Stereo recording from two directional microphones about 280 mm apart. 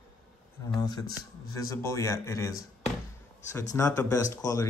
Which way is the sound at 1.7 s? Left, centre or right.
Centre.